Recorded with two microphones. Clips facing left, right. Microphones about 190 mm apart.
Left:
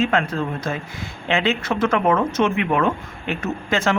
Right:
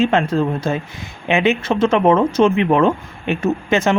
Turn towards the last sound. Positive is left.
turn(degrees=-20)  # may be behind; listen again after turning